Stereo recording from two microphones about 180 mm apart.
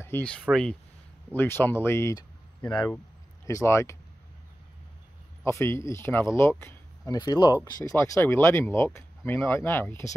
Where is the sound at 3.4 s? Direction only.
15° left (ahead or behind).